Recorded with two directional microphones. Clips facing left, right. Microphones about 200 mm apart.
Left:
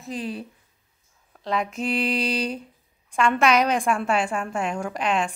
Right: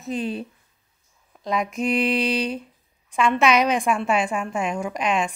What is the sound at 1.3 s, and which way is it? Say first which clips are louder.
Speech: right 1 dB; 10° right (ahead or behind).